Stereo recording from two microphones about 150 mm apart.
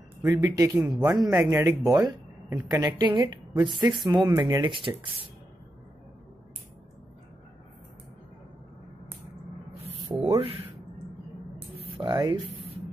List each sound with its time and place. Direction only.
0.2 s a woman's voice: 20° right (ahead or behind)
4.3 s speech: 20° right (ahead or behind)
4.6 s speech: 35° right (ahead or behind)
9.8 s speech: 30° right (ahead or behind)
11.8 s speech: 30° right (ahead or behind)